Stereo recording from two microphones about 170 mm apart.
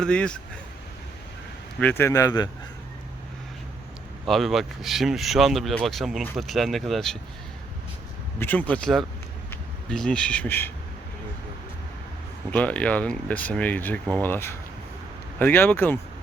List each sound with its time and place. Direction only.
0.0 s speech: 5° left (ahead or behind)
1.8 s speech: 10° left (ahead or behind)
4.3 s speech: centre (ahead or behind)
8.4 s speech: 10° left (ahead or behind)
12.5 s speech: 10° left (ahead or behind)